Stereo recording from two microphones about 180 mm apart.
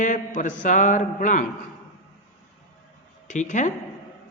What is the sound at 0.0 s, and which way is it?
Speech, 45° left (ahead or behind).